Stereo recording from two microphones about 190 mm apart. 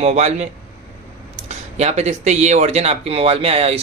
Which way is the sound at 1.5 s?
35° right (ahead or behind).